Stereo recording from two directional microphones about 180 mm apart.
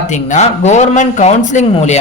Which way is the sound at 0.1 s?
40° left (ahead or behind).